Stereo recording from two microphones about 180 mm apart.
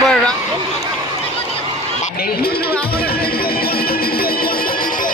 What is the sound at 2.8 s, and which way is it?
Music, 60° left (ahead or behind).